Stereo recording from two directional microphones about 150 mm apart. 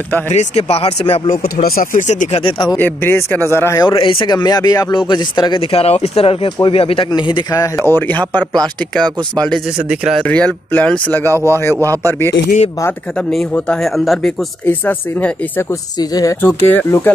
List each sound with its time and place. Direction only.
0.3 s speech: 50° left (ahead or behind)
1.3 s speech: 80° left; by 2.4 s 55° left (ahead or behind)
2.4 s speech: 30° left (ahead or behind)
2.8 s speech: 15° left (ahead or behind)
3.8 s speech: 30° left (ahead or behind)
7.7 s speech: 15° left (ahead or behind); by 10.2 s 5° right (ahead or behind)
10.2 s speech: 10° left (ahead or behind)
13.3 s speech: centre (ahead or behind)
14.7 s speech: 10° left (ahead or behind)
16.0 s speech: 25° left (ahead or behind)
16.3 s speech: 15° left (ahead or behind)